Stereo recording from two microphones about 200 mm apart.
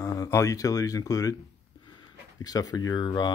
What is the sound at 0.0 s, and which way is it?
Speech, 15° left (ahead or behind).